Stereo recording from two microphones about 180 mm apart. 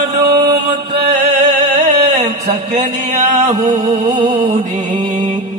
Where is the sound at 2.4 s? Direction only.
40° right (ahead or behind).